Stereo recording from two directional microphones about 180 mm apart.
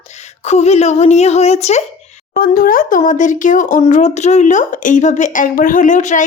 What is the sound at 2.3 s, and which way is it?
Speech, 55° left (ahead or behind).